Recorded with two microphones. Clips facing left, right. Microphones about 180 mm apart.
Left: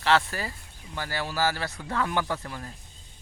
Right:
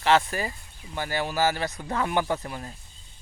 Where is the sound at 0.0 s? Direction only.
20° right (ahead or behind).